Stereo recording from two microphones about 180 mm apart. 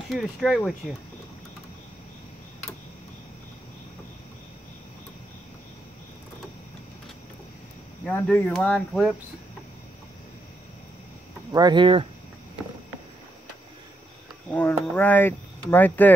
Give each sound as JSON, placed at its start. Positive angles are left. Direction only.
{"t": 0.1, "sound": "speech", "side_deg": 0}
{"t": 8.0, "sound": "speech", "side_deg": 10}
{"t": 11.5, "sound": "speech", "side_deg": -25}
{"t": 14.5, "sound": "cricket", "side_deg": 10}
{"t": 15.0, "sound": "speech", "side_deg": 10}